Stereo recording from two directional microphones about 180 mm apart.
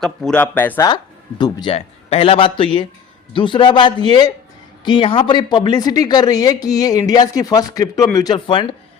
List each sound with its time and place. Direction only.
0.0 s speech: 5° left (ahead or behind)
1.4 s speech: 25° left (ahead or behind)
1.7 s a man's voice: 35° left (ahead or behind)